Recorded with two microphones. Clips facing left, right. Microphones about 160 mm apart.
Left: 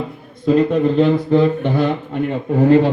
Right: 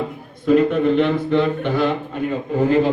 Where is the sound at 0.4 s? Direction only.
35° left (ahead or behind).